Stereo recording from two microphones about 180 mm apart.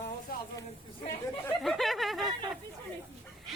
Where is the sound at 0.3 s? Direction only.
55° left (ahead or behind).